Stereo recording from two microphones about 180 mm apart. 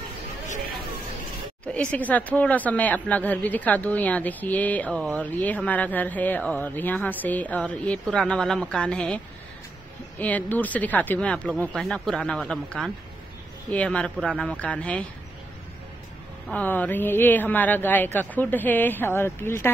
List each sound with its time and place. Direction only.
1.6 s speech: 5° left (ahead or behind)
16.4 s speech: 10° left (ahead or behind)